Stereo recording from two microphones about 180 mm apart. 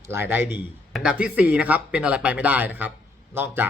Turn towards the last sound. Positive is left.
turn(degrees=-10)  # may be behind; listen again after turning